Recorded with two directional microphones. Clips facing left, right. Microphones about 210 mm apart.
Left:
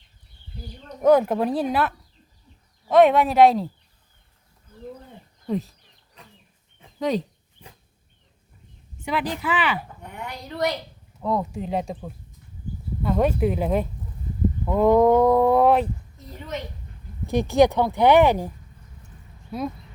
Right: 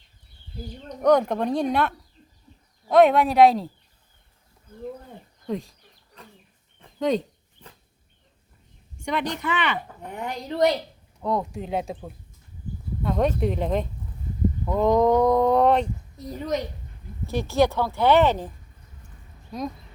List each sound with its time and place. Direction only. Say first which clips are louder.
1.0 s speech: left 2 dB; 5° left (ahead or behind)
2.9 s speech: left 1 dB; centre (ahead or behind)
5.5 s speech: left 3 dB; centre (ahead or behind)
6.7 s dog: right 1 dB; centre (ahead or behind)
7.6 s a sound: left 1 dB; 10° left (ahead or behind)
9.0 s speech: left 1 dB; 5° left (ahead or behind)
10.1 s a woman's voice: right 5 dB; 30° right (ahead or behind)
11.2 s speech: left 1 dB; centre (ahead or behind)
17.2 s speech: left 4 dB; 15° left (ahead or behind)